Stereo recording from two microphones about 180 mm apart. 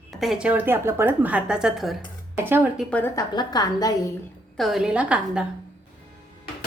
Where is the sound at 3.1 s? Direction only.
25° left (ahead or behind).